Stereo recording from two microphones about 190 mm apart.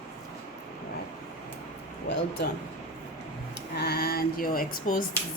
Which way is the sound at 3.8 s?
55° left (ahead or behind).